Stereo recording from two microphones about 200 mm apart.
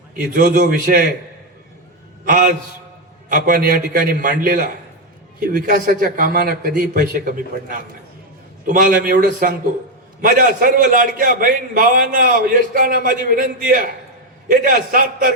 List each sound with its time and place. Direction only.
0.3 s a man's voice: 45° right (ahead or behind)
2.2 s a man's voice: 40° right (ahead or behind)